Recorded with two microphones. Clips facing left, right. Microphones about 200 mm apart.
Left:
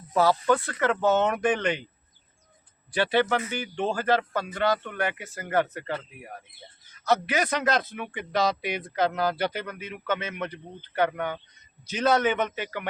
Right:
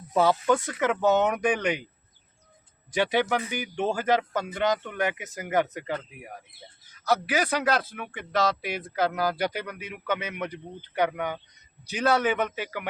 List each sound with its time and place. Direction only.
0.3 s speech: 15° right (ahead or behind)
2.9 s speech: 15° right (ahead or behind)